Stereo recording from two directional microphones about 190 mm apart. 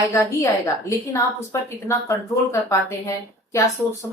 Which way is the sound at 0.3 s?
15° left (ahead or behind).